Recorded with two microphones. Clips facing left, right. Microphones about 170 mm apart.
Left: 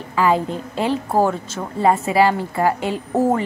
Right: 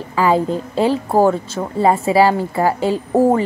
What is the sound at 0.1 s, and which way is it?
A woman's voice, 35° right (ahead or behind).